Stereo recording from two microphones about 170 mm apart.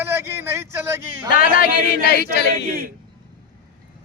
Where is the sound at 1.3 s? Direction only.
55° left (ahead or behind).